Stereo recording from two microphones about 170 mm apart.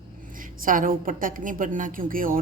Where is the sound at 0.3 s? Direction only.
55° right (ahead or behind).